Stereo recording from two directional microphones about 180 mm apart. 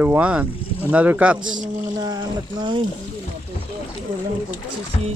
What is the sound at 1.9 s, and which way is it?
Speech, 20° right (ahead or behind).